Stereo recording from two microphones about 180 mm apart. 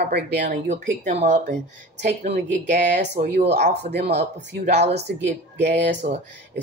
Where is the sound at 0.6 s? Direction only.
40° right (ahead or behind).